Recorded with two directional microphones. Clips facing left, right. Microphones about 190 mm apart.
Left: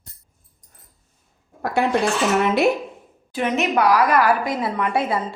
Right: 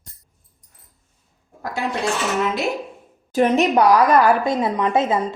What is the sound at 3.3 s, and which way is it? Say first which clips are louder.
A woman's voice: right 5 dB; 40° right (ahead or behind).